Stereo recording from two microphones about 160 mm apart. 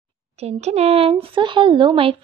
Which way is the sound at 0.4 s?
40° right (ahead or behind).